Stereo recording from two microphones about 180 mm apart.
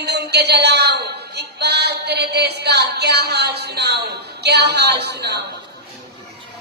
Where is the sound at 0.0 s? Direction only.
65° right (ahead or behind).